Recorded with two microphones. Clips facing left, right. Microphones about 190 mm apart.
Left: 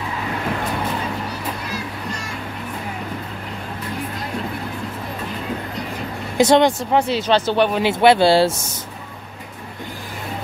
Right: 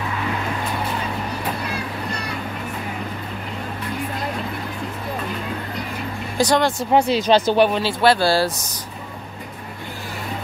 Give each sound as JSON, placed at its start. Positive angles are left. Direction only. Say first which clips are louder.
{"t": 6.3, "sound": "speech", "louder": "left 5 dB", "side_deg": 20}
{"t": 6.9, "sound": "speech", "louder": "right 2 dB", "side_deg": -10}
{"t": 7.8, "sound": "speech", "louder": "left 4 dB", "side_deg": 20}